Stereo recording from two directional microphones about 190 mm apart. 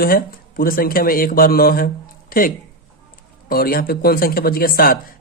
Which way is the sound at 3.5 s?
50° left (ahead or behind).